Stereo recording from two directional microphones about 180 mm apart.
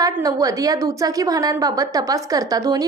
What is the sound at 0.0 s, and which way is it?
A woman's voice, 20° right (ahead or behind).